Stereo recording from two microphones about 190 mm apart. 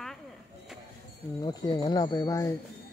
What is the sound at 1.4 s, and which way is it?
Wind chime, 20° left (ahead or behind).